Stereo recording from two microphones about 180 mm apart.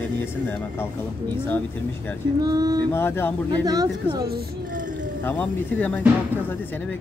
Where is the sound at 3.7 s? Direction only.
20° right (ahead or behind).